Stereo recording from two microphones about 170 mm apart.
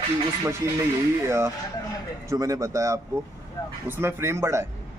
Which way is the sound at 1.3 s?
15° right (ahead or behind).